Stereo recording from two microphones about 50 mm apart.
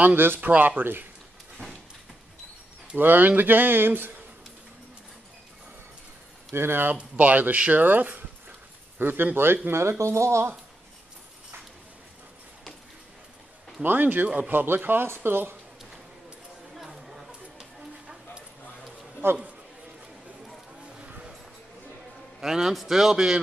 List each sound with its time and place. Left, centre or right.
0.0 s speech: right
0.4 s speech: right
3.0 s speech: right
6.5 s speech: right
7.0 s speech: right
9.7 s speech: right
13.8 s speech: right
16.7 s chatter: centre
17.6 s a sound: centre
19.2 s a man's voice: right
21.0 s vehicle: right
22.4 s a man's voice: centre